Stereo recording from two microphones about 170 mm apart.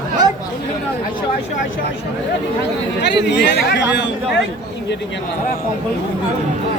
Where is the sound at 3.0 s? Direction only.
90° left; by 3.8 s 75° left (ahead or behind).